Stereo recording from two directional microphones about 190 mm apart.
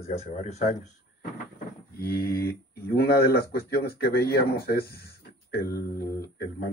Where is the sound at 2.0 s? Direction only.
55° left (ahead or behind).